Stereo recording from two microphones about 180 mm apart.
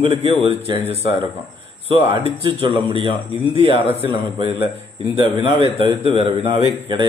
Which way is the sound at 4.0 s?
30° right (ahead or behind).